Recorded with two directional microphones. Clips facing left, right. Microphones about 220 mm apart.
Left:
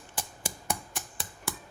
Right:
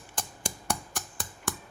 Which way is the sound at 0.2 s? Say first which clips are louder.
Right 1 dB; 5° left (ahead or behind).